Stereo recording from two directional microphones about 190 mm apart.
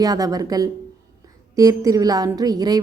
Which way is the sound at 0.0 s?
20° right (ahead or behind).